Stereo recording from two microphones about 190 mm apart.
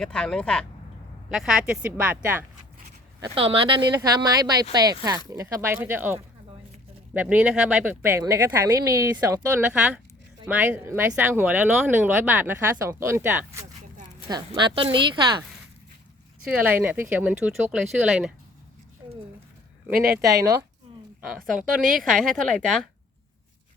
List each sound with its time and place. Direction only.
0.0 s speech: 5° left (ahead or behind)
3.3 s speech: 30° right (ahead or behind)
16.5 s speech: 10° right (ahead or behind)
19.9 s speech: 50° right (ahead or behind)
21.2 s speech: centre (ahead or behind)